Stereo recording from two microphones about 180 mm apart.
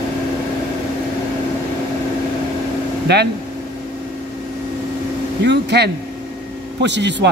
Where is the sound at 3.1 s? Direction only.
70° right (ahead or behind).